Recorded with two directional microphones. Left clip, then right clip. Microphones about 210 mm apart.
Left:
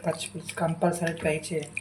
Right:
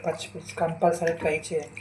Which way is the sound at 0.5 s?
35° left (ahead or behind).